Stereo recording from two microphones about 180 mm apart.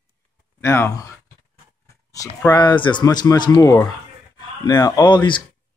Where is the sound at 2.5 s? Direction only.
25° left (ahead or behind).